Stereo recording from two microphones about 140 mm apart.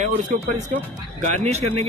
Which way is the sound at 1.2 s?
50° right (ahead or behind).